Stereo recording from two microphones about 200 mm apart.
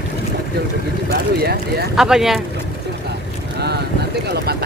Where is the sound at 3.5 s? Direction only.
55° right (ahead or behind).